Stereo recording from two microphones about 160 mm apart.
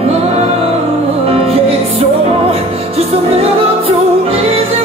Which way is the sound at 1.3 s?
40° right (ahead or behind).